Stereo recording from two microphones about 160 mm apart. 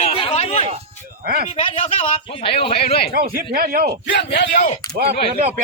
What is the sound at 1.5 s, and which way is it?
Speech, 35° left (ahead or behind).